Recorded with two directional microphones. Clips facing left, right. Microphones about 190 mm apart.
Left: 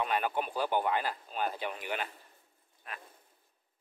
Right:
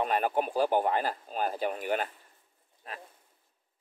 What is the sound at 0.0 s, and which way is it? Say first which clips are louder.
Speech: right 4 dB; 40° right (ahead or behind).